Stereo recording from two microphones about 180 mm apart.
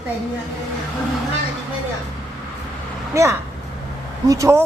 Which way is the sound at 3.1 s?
15° right (ahead or behind).